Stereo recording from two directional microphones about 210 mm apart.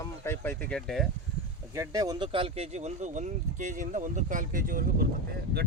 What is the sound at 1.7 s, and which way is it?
Speech, 15° right (ahead or behind).